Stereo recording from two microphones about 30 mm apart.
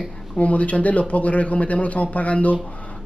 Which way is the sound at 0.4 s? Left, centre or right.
Left.